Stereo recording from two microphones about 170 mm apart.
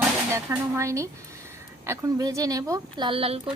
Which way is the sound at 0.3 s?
15° right (ahead or behind).